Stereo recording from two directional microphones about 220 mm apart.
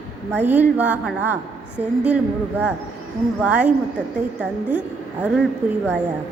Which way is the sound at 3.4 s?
5° right (ahead or behind).